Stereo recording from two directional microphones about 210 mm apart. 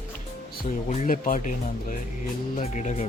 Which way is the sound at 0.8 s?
40° left (ahead or behind).